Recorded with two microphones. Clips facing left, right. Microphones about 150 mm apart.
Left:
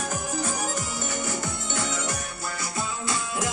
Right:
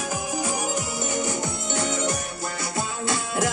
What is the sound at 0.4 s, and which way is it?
Music, 15° right (ahead or behind).